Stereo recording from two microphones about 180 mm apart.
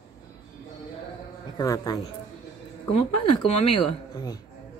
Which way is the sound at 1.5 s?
20° left (ahead or behind).